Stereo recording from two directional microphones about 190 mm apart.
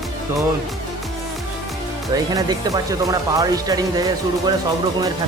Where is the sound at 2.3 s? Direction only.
20° right (ahead or behind).